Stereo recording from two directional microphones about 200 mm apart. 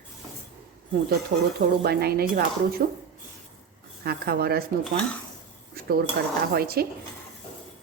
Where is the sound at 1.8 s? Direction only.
50° right (ahead or behind).